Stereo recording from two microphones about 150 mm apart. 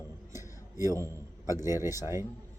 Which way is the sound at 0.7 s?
20° right (ahead or behind).